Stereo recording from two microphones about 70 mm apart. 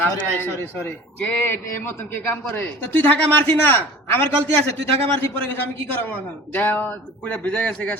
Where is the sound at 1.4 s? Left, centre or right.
Left.